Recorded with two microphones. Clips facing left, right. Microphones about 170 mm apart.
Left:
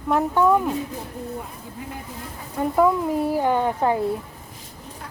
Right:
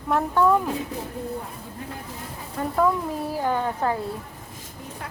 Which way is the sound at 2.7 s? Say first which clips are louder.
Left 4 dB; 15° left (ahead or behind).